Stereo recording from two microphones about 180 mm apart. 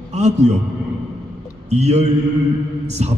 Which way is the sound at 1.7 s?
35° right (ahead or behind).